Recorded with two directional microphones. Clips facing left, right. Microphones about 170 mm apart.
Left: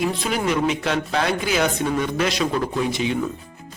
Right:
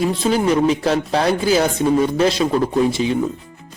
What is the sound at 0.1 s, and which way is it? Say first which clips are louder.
A man's voice: right 6 dB; 30° right (ahead or behind).